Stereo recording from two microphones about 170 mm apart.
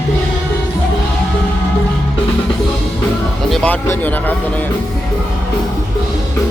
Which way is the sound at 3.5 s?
10° left (ahead or behind).